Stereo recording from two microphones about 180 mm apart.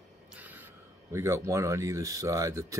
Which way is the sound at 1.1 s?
15° right (ahead or behind).